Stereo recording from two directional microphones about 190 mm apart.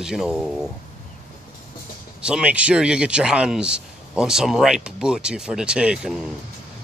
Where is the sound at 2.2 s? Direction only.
5° right (ahead or behind).